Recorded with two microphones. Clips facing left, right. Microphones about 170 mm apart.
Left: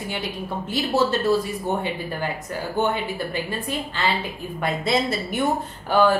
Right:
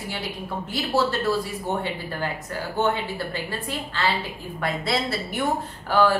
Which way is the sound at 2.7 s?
15° left (ahead or behind).